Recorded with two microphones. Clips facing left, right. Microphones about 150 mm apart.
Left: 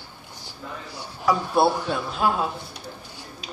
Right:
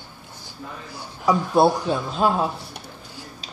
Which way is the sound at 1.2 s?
20° right (ahead or behind).